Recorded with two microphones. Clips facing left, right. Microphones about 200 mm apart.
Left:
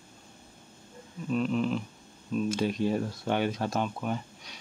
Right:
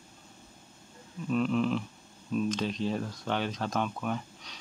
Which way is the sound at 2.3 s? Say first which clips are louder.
Left 2 dB; 5° left (ahead or behind).